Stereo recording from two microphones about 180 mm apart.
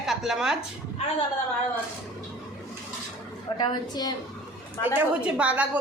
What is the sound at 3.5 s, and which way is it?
Speech, 25° left (ahead or behind).